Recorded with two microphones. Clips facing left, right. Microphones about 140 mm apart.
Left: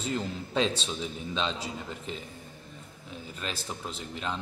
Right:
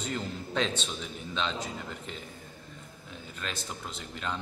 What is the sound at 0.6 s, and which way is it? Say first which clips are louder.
Speech: left 3 dB; 35° left (ahead or behind).